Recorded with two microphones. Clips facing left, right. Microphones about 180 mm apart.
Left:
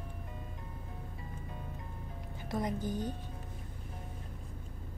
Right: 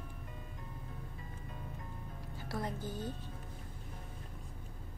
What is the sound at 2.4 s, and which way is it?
Speech, 20° left (ahead or behind).